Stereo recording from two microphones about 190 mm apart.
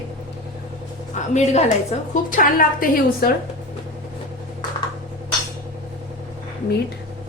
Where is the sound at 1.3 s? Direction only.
35° left (ahead or behind).